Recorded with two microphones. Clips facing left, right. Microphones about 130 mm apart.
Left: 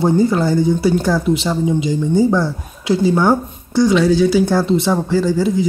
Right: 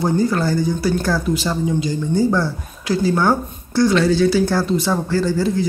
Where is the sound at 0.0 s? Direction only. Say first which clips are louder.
Left 4 dB; 20° left (ahead or behind).